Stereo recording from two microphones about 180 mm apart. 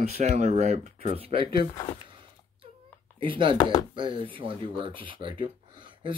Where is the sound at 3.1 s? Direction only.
30° right (ahead or behind).